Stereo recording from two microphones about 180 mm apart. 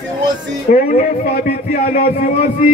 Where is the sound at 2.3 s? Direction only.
40° left (ahead or behind).